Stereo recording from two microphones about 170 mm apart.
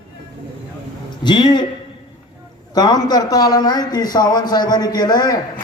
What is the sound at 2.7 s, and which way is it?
Speech, 25° left (ahead or behind).